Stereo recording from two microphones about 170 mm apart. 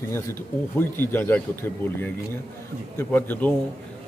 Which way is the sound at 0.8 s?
10° left (ahead or behind).